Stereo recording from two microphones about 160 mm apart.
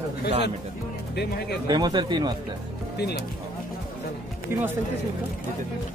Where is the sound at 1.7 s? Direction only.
25° right (ahead or behind).